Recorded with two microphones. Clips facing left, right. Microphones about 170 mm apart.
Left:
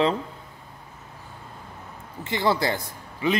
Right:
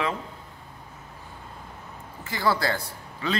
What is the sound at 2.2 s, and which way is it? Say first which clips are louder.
Speech: left 2 dB; 20° left (ahead or behind).